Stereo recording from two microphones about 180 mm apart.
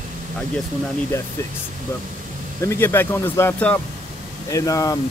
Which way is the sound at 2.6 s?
15° left (ahead or behind).